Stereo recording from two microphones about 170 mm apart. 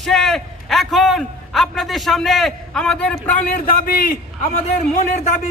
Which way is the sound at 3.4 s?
55° left (ahead or behind).